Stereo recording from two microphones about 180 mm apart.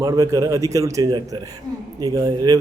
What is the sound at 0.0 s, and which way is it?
A man's voice, 20° right (ahead or behind).